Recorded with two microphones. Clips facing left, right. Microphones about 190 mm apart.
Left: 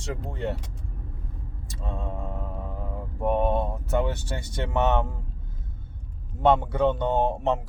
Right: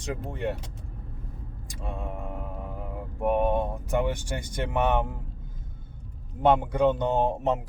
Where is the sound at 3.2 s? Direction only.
15° right (ahead or behind).